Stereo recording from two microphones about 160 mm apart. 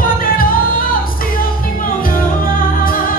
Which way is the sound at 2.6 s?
60° left (ahead or behind).